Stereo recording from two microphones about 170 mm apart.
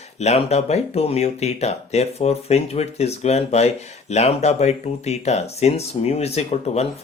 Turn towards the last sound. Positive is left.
turn(degrees=40)  # may be behind; listen again after turning